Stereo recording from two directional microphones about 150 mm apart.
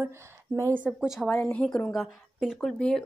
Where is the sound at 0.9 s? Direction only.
5° right (ahead or behind).